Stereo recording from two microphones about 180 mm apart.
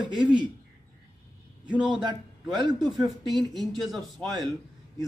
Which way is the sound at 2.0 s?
25° right (ahead or behind).